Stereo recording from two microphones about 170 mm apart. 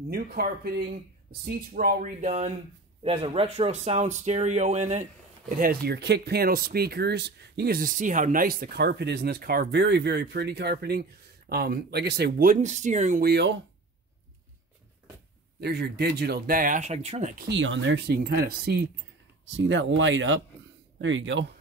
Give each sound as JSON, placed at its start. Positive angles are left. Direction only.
{"t": 0.1, "sound": "speech", "side_deg": -60}
{"t": 3.0, "sound": "speech", "side_deg": -35}
{"t": 5.6, "sound": "speech", "side_deg": -65}
{"t": 13.2, "sound": "speech", "side_deg": -80}
{"t": 15.6, "sound": "speech", "side_deg": -70}
{"t": 17.4, "sound": "speech", "side_deg": -90}
{"t": 19.5, "sound": "speech", "side_deg": -90}